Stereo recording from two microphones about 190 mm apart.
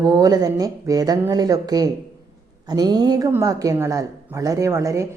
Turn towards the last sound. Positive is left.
turn(degrees=-15)  # may be behind; listen again after turning